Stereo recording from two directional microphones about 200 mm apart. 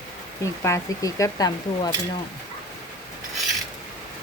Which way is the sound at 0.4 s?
15° left (ahead or behind).